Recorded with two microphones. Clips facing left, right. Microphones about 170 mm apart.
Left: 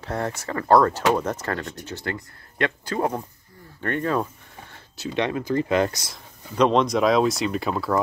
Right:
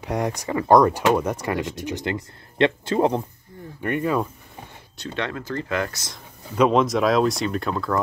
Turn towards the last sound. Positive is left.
turn(degrees=5)  # may be behind; listen again after turning